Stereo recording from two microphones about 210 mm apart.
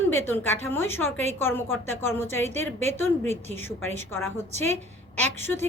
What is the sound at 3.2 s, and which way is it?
Speech, 30° right (ahead or behind).